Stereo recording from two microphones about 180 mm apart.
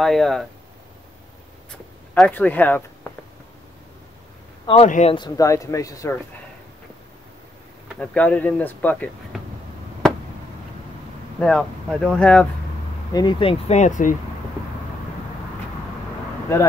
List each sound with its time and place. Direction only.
0.0 s speech: centre (ahead or behind)
2.1 s speech: 5° left (ahead or behind)
4.8 s speech: 45° left (ahead or behind)
5.1 s speech: 20° left (ahead or behind)
8.0 s speech: 5° left (ahead or behind)
11.3 s speech: 5° left (ahead or behind)
13.1 s speech: 25° left (ahead or behind); by 14.1 s 45° left (ahead or behind)